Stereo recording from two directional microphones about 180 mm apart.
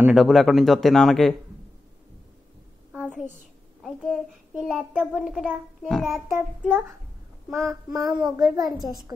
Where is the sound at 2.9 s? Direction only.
5° right (ahead or behind).